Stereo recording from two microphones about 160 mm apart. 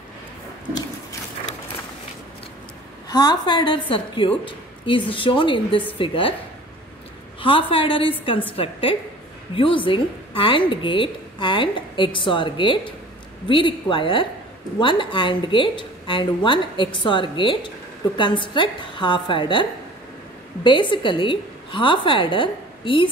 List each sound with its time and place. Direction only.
3.1 s a woman's voice: 25° left (ahead or behind)
7.4 s speech: 35° left (ahead or behind)